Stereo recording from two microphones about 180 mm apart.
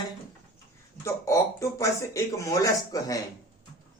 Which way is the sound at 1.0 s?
15° left (ahead or behind).